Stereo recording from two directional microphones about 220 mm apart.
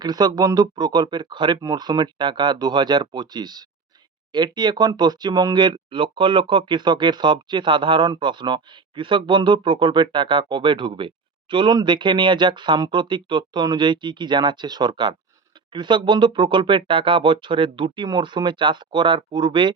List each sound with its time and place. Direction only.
0.0 s speech: 20° right (ahead or behind)